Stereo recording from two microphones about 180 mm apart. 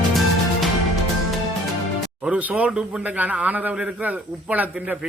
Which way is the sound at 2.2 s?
10° right (ahead or behind).